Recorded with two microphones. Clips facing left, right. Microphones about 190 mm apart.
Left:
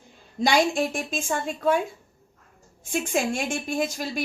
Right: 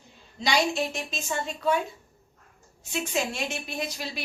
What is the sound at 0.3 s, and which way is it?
A woman's voice, 50° left (ahead or behind).